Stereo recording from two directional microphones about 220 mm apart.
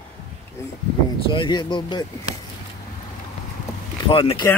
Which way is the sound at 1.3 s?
20° left (ahead or behind).